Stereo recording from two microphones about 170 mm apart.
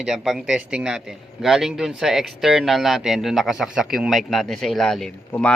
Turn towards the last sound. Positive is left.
turn(degrees=10)  # may be behind; listen again after turning